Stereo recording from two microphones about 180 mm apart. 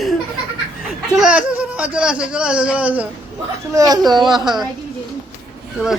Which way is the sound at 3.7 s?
20° right (ahead or behind).